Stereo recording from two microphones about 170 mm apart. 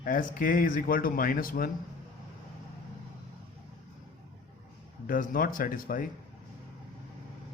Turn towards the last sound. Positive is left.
turn(degrees=55)  # may be behind; listen again after turning